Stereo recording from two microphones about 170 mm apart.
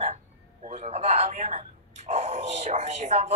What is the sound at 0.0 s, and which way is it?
Speech, 40° right (ahead or behind).